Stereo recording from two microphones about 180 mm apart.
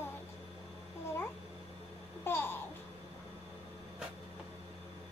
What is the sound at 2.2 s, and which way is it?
Babbling, 10° left (ahead or behind).